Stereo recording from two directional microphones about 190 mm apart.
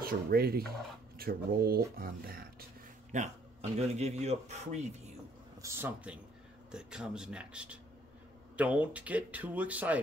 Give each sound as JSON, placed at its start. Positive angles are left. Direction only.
{"t": 0.0, "sound": "speech", "side_deg": -55}
{"t": 3.1, "sound": "speech", "side_deg": -40}
{"t": 5.6, "sound": "speech", "side_deg": -15}